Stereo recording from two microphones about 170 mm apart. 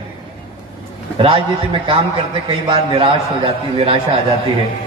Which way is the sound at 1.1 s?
30° right (ahead or behind).